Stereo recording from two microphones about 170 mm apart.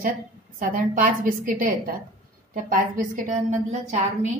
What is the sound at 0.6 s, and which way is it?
A woman's voice, 55° right (ahead or behind).